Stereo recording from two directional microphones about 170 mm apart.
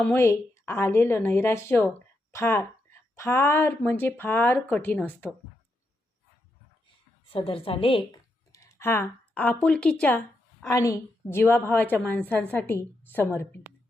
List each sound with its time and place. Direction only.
0.0 s a woman's voice: 15° left (ahead or behind)
7.3 s a woman's voice: 35° left (ahead or behind)
8.5 s speech: 15° left (ahead or behind)
10.7 s a woman's voice: 20° left (ahead or behind)